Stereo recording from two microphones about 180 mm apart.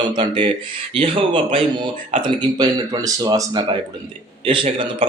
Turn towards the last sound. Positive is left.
turn(degrees=-30)  # may be behind; listen again after turning